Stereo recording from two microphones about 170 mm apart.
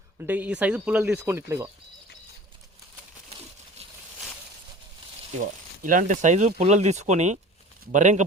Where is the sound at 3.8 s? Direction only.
35° right (ahead or behind).